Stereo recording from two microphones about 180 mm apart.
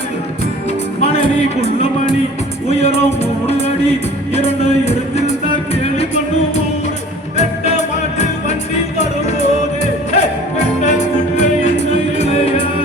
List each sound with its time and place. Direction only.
1.0 s music: 30° left (ahead or behind)
7.3 s music: 40° left (ahead or behind)